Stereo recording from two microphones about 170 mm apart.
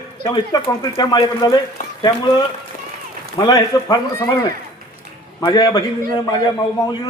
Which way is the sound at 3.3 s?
20° left (ahead or behind).